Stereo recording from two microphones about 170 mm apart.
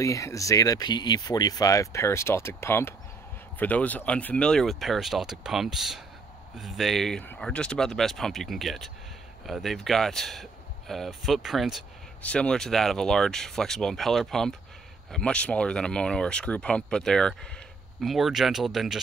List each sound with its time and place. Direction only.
0.0 s speech: 20° left (ahead or behind); by 18.9 s centre (ahead or behind)